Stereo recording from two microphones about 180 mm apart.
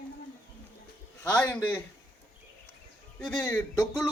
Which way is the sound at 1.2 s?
10° left (ahead or behind).